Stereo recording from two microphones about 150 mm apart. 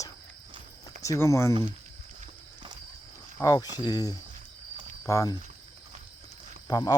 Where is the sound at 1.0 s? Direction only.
20° left (ahead or behind).